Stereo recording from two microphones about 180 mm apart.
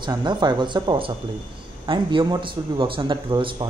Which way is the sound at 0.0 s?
25° right (ahead or behind).